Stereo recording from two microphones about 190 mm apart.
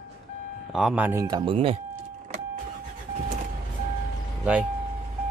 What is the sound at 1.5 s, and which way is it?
Speech, 30° right (ahead or behind).